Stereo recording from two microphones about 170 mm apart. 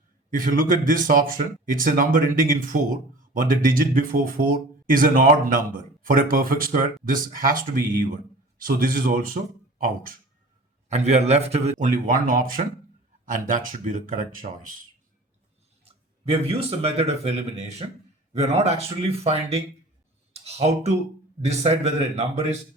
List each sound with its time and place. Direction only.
0.3 s speech: 55° right (ahead or behind)
10.8 s a man's voice: 40° right (ahead or behind)
15.8 s speech: 35° right (ahead or behind)
20.3 s a sound: 40° right (ahead or behind)
21.4 s speech: 40° right (ahead or behind)